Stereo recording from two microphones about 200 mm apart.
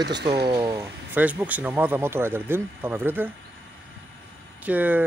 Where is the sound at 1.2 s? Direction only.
10° right (ahead or behind).